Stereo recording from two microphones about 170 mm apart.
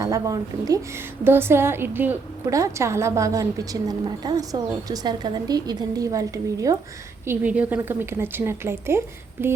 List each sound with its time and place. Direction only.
0.0 s a woman's voice: 20° right (ahead or behind)
7.3 s a woman's voice: 10° right (ahead or behind)